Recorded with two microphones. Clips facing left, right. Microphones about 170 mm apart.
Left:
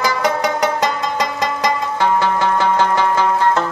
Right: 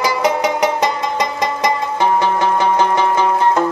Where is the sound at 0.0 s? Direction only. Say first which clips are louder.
Right 2 dB; 15° right (ahead or behind).